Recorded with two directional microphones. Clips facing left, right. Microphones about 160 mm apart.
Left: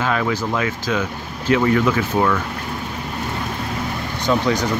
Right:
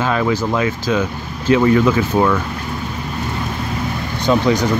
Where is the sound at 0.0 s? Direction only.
25° right (ahead or behind).